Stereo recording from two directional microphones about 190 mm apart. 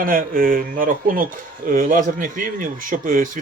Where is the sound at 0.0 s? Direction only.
50° right (ahead or behind).